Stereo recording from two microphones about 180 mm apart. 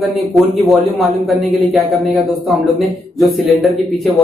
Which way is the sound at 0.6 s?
Centre (ahead or behind).